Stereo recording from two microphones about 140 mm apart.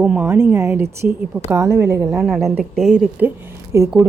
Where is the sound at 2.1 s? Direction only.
Centre (ahead or behind).